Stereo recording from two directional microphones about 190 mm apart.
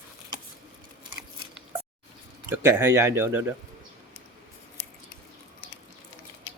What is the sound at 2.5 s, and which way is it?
Speech, 10° right (ahead or behind).